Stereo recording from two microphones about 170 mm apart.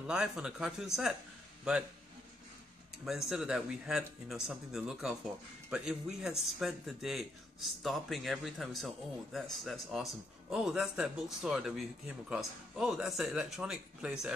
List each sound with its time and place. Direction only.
0.0 s a man's voice: 5° right (ahead or behind)
3.1 s speech: 5° right (ahead or behind)